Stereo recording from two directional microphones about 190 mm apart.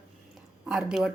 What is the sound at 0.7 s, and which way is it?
Speech, 5° right (ahead or behind).